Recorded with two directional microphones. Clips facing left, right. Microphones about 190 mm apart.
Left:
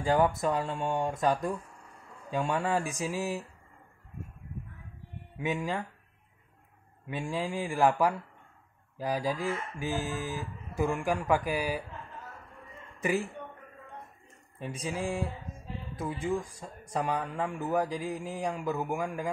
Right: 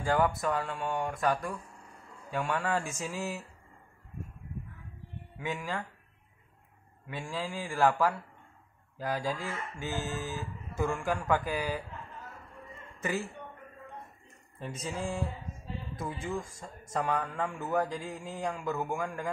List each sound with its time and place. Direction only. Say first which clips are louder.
0.0 s speech: left 2 dB; 15° left (ahead or behind)
5.4 s speech: left 4 dB; 15° left (ahead or behind)
7.1 s speech: left 4 dB; 15° left (ahead or behind)
13.0 s speech: left 4 dB; 15° left (ahead or behind)
14.6 s speech: left 2 dB; 10° left (ahead or behind)